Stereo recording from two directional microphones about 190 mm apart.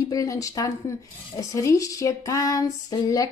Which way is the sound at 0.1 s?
15° left (ahead or behind).